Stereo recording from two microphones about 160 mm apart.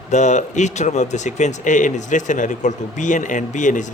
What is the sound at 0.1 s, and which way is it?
Speech, 50° left (ahead or behind).